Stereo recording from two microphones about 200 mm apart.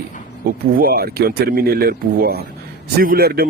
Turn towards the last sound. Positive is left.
turn(degrees=-50)  # may be behind; listen again after turning